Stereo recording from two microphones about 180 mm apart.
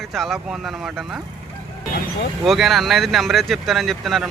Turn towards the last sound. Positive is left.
turn(degrees=0)  # may be behind; listen again after turning